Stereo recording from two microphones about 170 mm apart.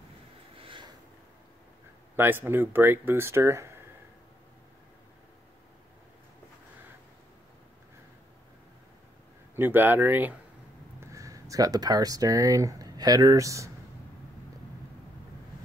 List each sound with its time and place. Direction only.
0.6 s a sound: 30° right (ahead or behind)
2.1 s speech: 10° right (ahead or behind)
9.6 s speech: 10° right (ahead or behind)